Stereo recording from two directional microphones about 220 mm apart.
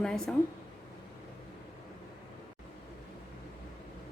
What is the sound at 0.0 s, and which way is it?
Speech, centre (ahead or behind).